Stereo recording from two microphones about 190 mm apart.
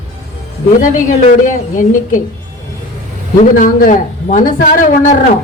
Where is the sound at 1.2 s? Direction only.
45° left (ahead or behind).